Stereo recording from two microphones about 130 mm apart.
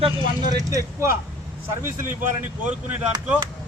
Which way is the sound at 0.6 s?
25° right (ahead or behind).